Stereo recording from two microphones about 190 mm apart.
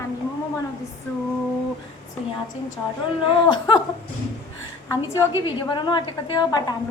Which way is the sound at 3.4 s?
25° left (ahead or behind).